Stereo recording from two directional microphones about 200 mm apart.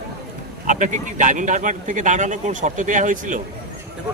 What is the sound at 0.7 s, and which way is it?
Speech, 40° right (ahead or behind).